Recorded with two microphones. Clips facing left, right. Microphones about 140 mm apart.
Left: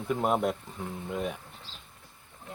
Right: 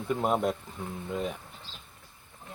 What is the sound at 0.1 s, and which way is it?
Speech, 5° left (ahead or behind).